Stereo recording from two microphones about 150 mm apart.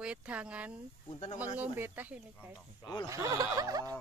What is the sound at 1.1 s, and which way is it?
Speech, 50° left (ahead or behind).